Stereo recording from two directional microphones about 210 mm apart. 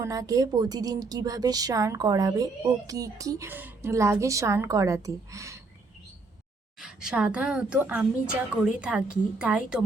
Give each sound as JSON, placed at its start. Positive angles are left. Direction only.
{"t": 0.0, "sound": "a woman's voice", "side_deg": -15}
{"t": 6.7, "sound": "a woman's voice", "side_deg": -5}